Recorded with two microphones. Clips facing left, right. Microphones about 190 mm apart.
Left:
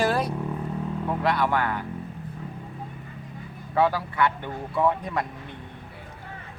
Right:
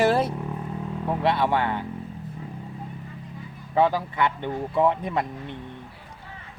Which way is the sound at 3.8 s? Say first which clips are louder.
Right 1 dB; 20° right (ahead or behind).